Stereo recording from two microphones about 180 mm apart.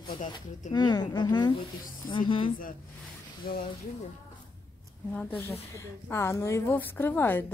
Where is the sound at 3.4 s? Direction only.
55° left (ahead or behind).